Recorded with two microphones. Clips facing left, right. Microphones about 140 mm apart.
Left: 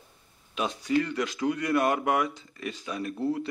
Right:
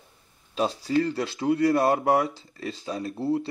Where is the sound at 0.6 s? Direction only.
35° right (ahead or behind).